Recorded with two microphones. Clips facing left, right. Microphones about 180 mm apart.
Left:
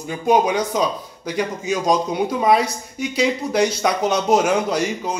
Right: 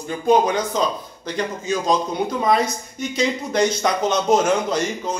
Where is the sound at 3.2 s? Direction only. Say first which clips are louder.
Left 1 dB; 5° left (ahead or behind).